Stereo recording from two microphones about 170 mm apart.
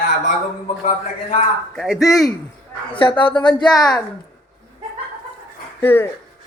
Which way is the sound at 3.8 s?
5° left (ahead or behind).